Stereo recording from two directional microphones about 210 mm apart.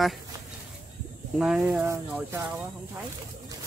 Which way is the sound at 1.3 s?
Centre (ahead or behind).